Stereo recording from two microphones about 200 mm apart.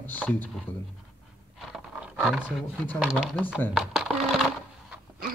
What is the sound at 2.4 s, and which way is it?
Speech, 10° left (ahead or behind).